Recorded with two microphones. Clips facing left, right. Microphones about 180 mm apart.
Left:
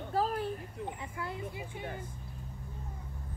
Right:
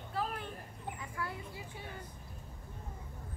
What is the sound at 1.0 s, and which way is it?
Speech, 25° left (ahead or behind).